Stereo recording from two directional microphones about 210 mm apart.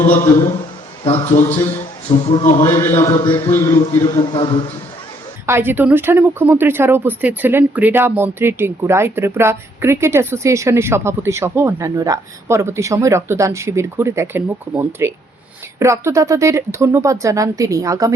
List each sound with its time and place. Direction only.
1.0 s a man's voice: 30° left (ahead or behind)
2.6 s a man's voice: 15° left (ahead or behind)
3.2 s a man's voice: 20° left (ahead or behind)
5.5 s speech: 10° right (ahead or behind)